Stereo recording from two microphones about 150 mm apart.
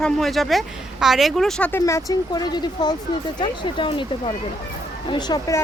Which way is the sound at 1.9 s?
20° left (ahead or behind).